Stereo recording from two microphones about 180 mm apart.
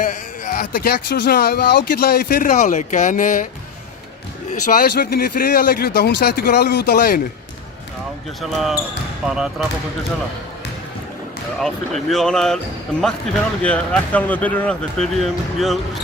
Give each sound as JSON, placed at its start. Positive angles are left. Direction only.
{"t": 0.0, "sound": "speech", "side_deg": 45}
{"t": 4.6, "sound": "speech", "side_deg": 50}
{"t": 8.4, "sound": "speech", "side_deg": 0}
{"t": 11.6, "sound": "speech", "side_deg": 0}
{"t": 13.6, "sound": "speech", "side_deg": 5}